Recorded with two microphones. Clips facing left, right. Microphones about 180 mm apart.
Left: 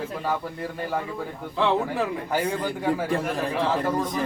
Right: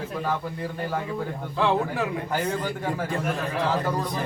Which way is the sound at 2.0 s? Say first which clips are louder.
Left 1 dB; 5° left (ahead or behind).